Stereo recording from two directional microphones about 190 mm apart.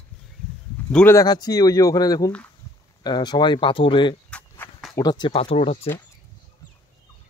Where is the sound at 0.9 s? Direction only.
10° left (ahead or behind); by 4.1 s 25° left (ahead or behind).